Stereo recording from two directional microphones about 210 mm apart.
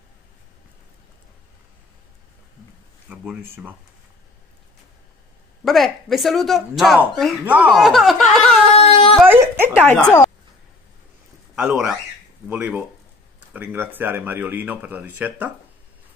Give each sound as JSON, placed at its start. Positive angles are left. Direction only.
{"t": 3.1, "sound": "speech", "side_deg": -10}
{"t": 5.7, "sound": "speech", "side_deg": 0}
{"t": 8.7, "sound": "a sound", "side_deg": 30}
{"t": 9.3, "sound": "a sound", "side_deg": -10}
{"t": 9.8, "sound": "speech", "side_deg": 10}
{"t": 11.5, "sound": "speech", "side_deg": -5}